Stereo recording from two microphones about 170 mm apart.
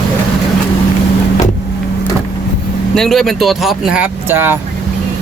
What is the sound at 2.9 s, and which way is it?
Speech, centre (ahead or behind).